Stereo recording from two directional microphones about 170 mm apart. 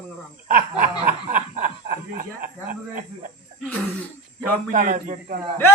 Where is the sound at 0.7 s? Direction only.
45° right (ahead or behind).